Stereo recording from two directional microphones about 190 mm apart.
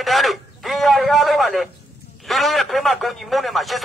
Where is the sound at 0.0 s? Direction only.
Centre (ahead or behind).